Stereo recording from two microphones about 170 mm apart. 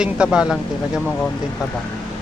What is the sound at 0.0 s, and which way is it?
Speech, 5° right (ahead or behind).